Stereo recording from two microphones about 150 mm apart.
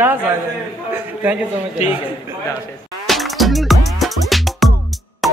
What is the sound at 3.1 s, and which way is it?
Music, centre (ahead or behind).